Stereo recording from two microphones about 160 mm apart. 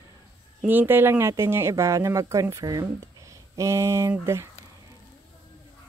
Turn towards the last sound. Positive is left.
turn(degrees=-15)  # may be behind; listen again after turning